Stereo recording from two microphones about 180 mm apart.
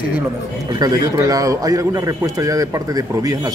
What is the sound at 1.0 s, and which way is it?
A man's voice, 20° right (ahead or behind).